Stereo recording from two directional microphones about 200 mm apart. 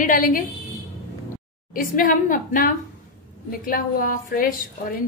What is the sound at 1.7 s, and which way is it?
A woman's voice, 45° left (ahead or behind).